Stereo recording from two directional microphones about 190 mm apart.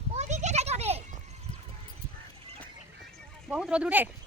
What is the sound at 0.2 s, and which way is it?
Children playing, 35° right (ahead or behind).